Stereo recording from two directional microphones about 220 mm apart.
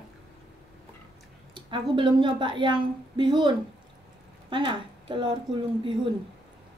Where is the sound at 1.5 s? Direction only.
20° right (ahead or behind).